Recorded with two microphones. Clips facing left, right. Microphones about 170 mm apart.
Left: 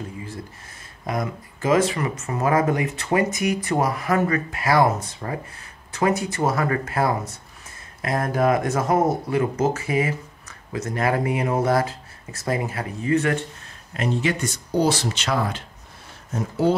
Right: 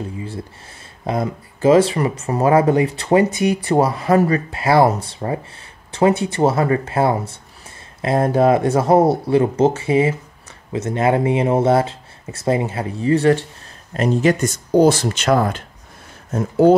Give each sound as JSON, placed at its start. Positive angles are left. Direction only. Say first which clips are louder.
{"t": 1.0, "sound": "speech", "louder": "right 5 dB", "side_deg": -30}